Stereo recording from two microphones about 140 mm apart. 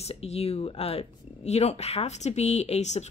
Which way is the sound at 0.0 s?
45° left (ahead or behind).